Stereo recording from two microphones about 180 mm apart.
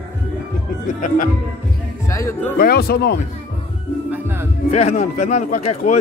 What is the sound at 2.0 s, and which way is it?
Speech, 15° left (ahead or behind).